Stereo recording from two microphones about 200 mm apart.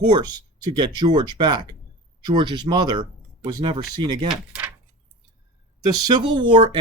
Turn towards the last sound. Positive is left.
turn(degrees=-25)  # may be behind; listen again after turning